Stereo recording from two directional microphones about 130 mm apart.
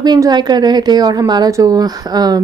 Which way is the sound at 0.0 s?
30° right (ahead or behind).